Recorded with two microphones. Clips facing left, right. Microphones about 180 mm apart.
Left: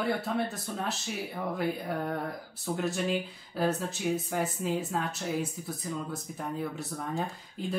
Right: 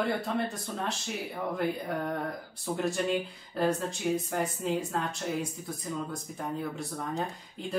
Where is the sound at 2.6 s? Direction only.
Centre (ahead or behind).